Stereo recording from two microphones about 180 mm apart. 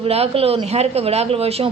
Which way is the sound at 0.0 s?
35° right (ahead or behind).